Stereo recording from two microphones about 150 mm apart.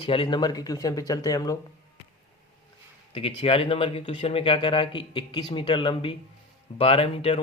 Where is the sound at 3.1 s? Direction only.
40° left (ahead or behind).